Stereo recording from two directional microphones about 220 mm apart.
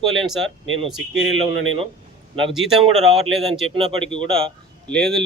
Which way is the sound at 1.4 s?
25° right (ahead or behind).